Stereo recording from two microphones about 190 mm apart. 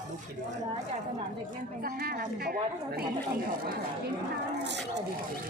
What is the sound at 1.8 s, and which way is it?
A woman's voice, 50° right (ahead or behind).